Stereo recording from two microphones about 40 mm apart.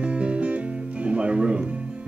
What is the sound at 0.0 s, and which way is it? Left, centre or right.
Guitar, right.